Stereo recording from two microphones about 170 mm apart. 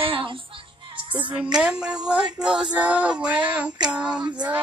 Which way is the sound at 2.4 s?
5° right (ahead or behind).